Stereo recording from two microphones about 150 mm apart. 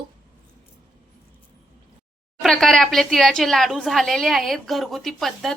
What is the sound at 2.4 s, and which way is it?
Speech, centre (ahead or behind).